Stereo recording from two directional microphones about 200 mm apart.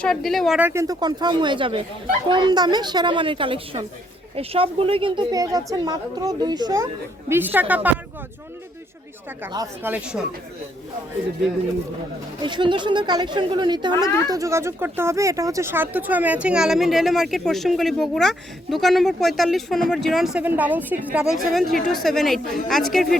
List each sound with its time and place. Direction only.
0.0 s a woman's voice: centre (ahead or behind)
9.5 s a woman's voice: 15° right (ahead or behind)
12.4 s a woman's voice: 25° right (ahead or behind); by 23.1 s centre (ahead or behind)